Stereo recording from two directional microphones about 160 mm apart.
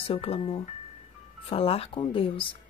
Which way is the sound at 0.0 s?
40° left (ahead or behind).